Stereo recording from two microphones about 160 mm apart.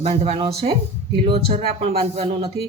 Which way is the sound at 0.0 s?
40° right (ahead or behind).